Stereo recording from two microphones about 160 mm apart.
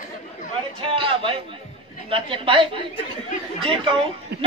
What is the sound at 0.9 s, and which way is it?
A woman's voice, 35° right (ahead or behind).